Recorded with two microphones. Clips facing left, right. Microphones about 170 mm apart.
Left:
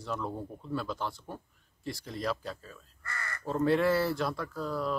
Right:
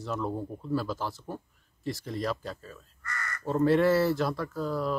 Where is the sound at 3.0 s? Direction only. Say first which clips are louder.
Right 2 dB; 30° left (ahead or behind).